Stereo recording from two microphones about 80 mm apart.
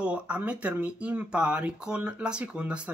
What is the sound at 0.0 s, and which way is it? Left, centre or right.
Speech, centre.